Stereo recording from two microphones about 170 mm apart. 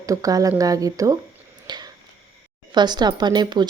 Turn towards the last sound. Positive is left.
turn(degrees=-25)  # may be behind; listen again after turning